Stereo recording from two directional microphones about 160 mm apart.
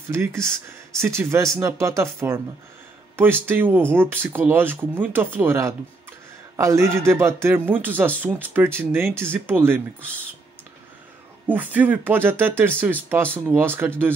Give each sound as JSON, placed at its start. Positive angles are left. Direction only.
{"t": 0.1, "sound": "speech", "side_deg": -15}
{"t": 1.6, "sound": "speech", "side_deg": -15}
{"t": 11.4, "sound": "speech", "side_deg": -10}